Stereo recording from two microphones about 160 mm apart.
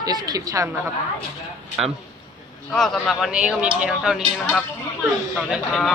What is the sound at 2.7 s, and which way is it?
A man's voice, centre (ahead or behind).